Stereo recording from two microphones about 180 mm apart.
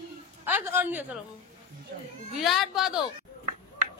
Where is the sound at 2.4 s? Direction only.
Centre (ahead or behind).